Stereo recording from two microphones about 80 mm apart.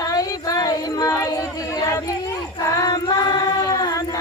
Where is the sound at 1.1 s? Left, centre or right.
Left.